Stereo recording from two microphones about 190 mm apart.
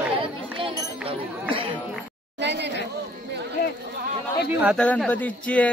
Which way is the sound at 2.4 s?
65° right (ahead or behind).